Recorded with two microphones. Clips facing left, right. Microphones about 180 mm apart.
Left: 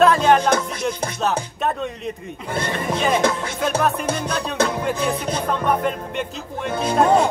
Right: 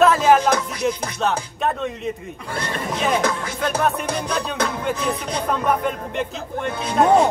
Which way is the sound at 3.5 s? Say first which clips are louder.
Left 1 dB; centre (ahead or behind).